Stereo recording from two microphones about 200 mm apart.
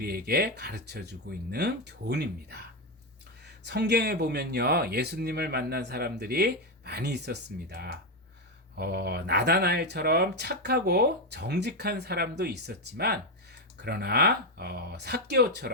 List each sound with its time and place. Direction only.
0.0 s speech: 50° right (ahead or behind)